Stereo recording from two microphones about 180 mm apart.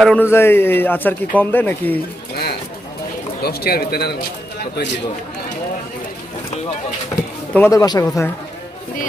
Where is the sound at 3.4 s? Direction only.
60° left (ahead or behind).